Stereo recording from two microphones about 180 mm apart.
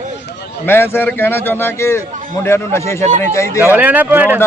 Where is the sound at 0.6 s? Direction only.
15° left (ahead or behind).